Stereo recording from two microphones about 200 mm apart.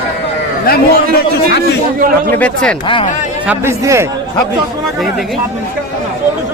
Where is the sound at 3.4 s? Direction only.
15° right (ahead or behind).